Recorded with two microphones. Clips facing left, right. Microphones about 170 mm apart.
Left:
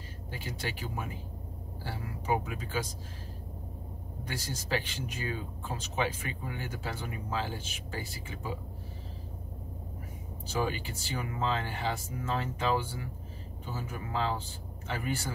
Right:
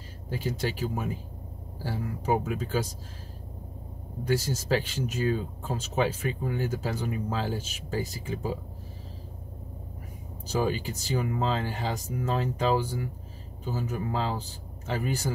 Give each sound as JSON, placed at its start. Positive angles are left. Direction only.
{"t": 0.3, "sound": "speech", "side_deg": -45}
{"t": 4.3, "sound": "speech", "side_deg": -45}
{"t": 10.4, "sound": "speech", "side_deg": -40}